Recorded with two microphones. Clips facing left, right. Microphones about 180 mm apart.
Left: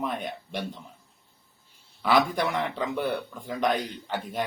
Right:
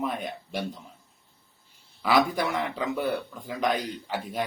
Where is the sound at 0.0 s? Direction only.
Centre (ahead or behind).